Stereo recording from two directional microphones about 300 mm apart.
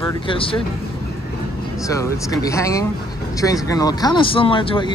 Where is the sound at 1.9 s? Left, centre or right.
Centre.